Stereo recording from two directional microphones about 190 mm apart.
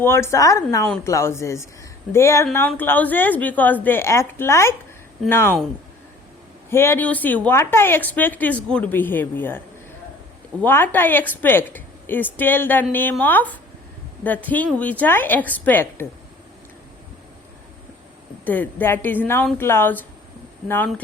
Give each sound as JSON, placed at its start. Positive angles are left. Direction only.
{"t": 0.0, "sound": "speech", "side_deg": 15}
{"t": 6.7, "sound": "speech", "side_deg": 15}
{"t": 18.4, "sound": "speech", "side_deg": 10}